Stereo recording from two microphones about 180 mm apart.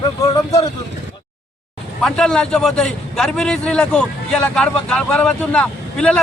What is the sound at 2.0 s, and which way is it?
A man's voice, 5° left (ahead or behind).